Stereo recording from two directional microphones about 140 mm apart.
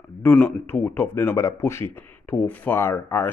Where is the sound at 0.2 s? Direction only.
15° left (ahead or behind).